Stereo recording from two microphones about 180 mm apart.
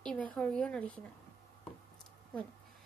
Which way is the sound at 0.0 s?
5° left (ahead or behind).